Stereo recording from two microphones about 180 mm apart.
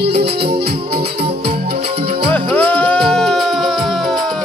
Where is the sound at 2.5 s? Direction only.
5° left (ahead or behind).